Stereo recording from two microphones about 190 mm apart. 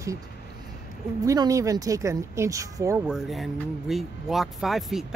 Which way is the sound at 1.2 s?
15° right (ahead or behind).